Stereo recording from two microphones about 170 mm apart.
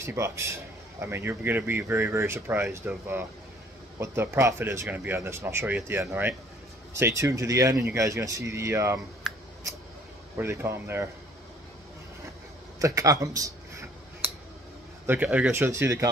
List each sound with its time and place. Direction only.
0.0 s speech: 15° right (ahead or behind)
9.3 s scissors: centre (ahead or behind)
10.3 s speech: 15° right (ahead or behind)
12.7 s a sound: 20° right (ahead or behind)
15.0 s speech: 10° right (ahead or behind)